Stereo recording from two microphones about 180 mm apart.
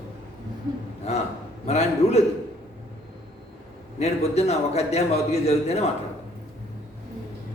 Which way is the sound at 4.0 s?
35° left (ahead or behind).